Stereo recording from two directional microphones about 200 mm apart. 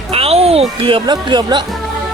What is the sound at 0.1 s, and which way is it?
Speech, 30° right (ahead or behind).